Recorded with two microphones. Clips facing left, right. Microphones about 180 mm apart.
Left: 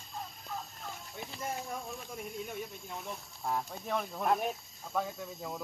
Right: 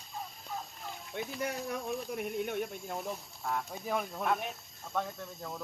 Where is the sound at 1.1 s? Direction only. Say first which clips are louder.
Right 4 dB; 70° right (ahead or behind).